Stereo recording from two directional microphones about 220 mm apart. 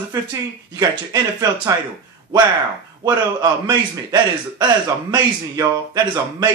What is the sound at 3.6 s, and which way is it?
A man's voice, 20° right (ahead or behind).